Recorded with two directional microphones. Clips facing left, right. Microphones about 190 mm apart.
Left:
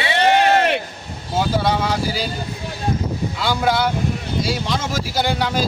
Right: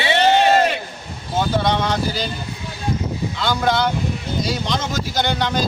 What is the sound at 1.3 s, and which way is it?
Speech, 5° left (ahead or behind).